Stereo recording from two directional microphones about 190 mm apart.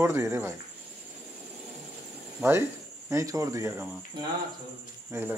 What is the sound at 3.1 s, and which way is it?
Speech, 15° right (ahead or behind).